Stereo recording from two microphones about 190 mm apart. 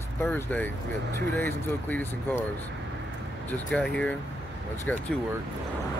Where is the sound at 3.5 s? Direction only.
5° left (ahead or behind).